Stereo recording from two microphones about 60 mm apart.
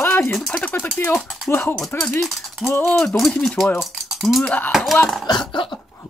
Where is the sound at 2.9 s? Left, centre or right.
Centre.